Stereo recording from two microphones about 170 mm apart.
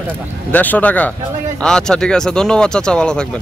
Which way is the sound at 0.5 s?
10° left (ahead or behind).